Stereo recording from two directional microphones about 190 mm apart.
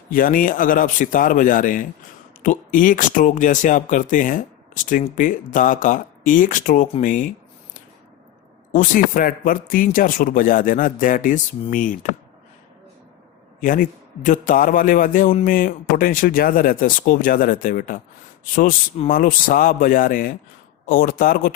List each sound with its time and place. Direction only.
0.1 s speech: 45° left (ahead or behind)
8.7 s speech: 45° left (ahead or behind)
13.6 s speech: 45° left (ahead or behind)
19.0 s speech: 45° left (ahead or behind)